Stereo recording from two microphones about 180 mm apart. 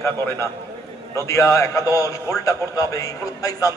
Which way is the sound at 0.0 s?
15° left (ahead or behind).